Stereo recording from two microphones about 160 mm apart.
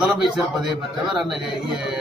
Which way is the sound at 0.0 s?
Centre (ahead or behind).